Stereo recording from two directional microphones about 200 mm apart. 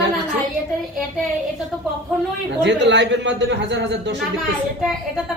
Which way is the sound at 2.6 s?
60° right (ahead or behind).